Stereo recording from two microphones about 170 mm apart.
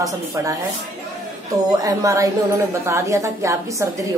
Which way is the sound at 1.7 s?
20° right (ahead or behind).